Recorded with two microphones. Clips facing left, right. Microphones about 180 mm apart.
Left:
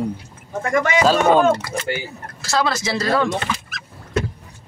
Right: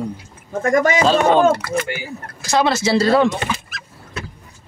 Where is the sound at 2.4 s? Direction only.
20° right (ahead or behind).